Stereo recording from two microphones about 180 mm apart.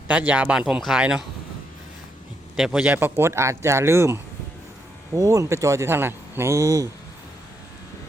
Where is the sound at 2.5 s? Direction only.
5° right (ahead or behind).